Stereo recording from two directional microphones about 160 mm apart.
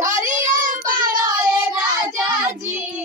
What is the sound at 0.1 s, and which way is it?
Child singing, 50° right (ahead or behind).